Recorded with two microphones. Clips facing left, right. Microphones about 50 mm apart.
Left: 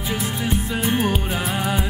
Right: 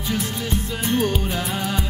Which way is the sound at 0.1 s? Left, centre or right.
Centre.